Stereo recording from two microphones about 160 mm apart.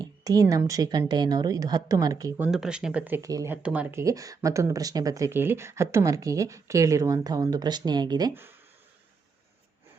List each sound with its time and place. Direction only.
0.0 s speech: 25° right (ahead or behind)
2.5 s speech: 5° right (ahead or behind)
3.2 s speech: 20° right (ahead or behind)